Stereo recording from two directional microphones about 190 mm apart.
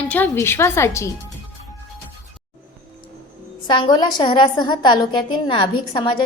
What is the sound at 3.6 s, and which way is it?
A woman's voice, 25° left (ahead or behind).